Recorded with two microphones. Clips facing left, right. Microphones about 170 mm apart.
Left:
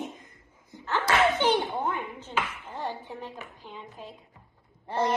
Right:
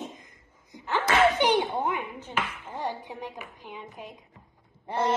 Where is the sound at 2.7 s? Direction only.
15° right (ahead or behind).